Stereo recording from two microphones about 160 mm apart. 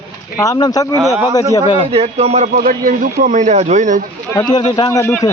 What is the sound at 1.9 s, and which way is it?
Speech, 40° right (ahead or behind).